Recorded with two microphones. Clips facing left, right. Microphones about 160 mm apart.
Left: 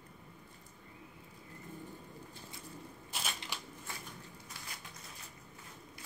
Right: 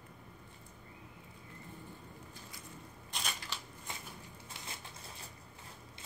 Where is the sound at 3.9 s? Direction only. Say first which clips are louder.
Right 1 dB; 20° right (ahead or behind).